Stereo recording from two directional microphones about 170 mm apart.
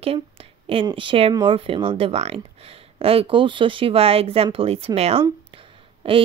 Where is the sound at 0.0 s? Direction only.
35° right (ahead or behind).